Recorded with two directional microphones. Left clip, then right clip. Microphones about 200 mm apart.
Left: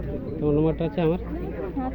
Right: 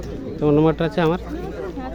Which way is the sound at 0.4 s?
45° right (ahead or behind).